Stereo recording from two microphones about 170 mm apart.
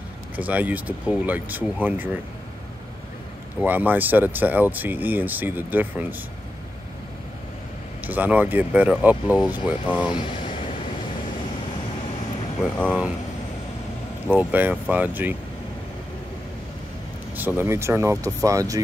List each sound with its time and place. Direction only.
0.4 s speech: 10° right (ahead or behind)
3.6 s speech: 10° right (ahead or behind)
8.1 s speech: 10° right (ahead or behind)
10.1 s speech: 30° left (ahead or behind)
14.2 s speech: 10° right (ahead or behind)
17.4 s speech: 10° right (ahead or behind)